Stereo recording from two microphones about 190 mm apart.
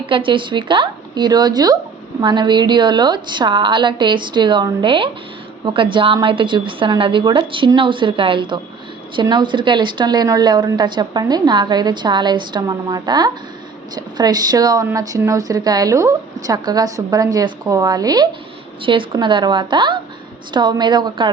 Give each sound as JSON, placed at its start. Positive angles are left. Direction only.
{"t": 0.0, "sound": "a woman's voice", "side_deg": -25}